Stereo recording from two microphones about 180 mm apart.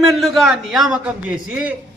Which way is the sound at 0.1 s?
Centre (ahead or behind).